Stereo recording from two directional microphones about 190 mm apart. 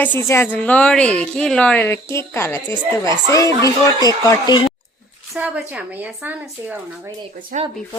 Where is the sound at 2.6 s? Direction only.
25° right (ahead or behind).